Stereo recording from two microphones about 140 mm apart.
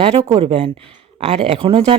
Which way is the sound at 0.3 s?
50° right (ahead or behind).